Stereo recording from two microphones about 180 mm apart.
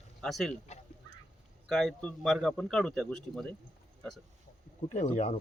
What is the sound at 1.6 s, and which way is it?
Speech, centre (ahead or behind).